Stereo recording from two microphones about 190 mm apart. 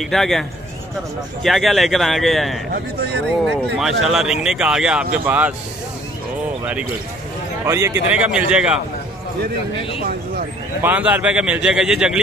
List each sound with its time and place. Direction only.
0.0 s speech: centre (ahead or behind)
2.7 s speech: 60° right (ahead or behind)
4.0 s speech: centre (ahead or behind)
6.6 s a man's voice: 5° right (ahead or behind)
10.8 s speech: 10° right (ahead or behind)